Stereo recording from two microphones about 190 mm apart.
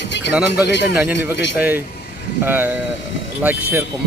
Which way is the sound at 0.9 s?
10° right (ahead or behind).